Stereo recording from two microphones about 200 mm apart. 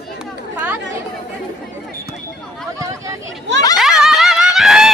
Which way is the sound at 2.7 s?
15° right (ahead or behind).